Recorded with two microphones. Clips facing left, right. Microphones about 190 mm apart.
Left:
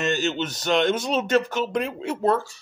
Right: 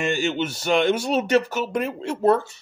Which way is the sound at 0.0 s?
10° right (ahead or behind).